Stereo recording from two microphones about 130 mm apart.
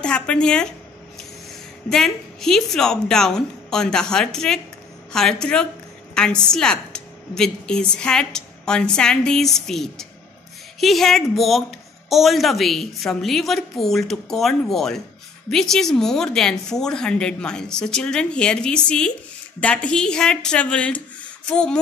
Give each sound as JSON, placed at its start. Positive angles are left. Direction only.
{"t": 0.0, "sound": "a woman's voice", "side_deg": 10}
{"t": 1.9, "sound": "a woman's voice", "side_deg": 5}